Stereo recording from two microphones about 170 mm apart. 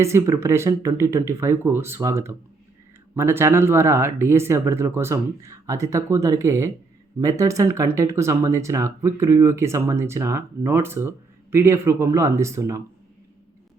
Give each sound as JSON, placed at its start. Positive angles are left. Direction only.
{"t": 0.0, "sound": "speech", "side_deg": -15}